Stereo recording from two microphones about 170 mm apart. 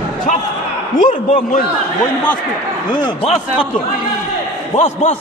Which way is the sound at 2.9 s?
30° left (ahead or behind).